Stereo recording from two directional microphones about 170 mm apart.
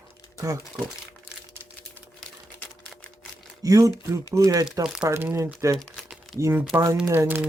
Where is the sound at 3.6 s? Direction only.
20° right (ahead or behind).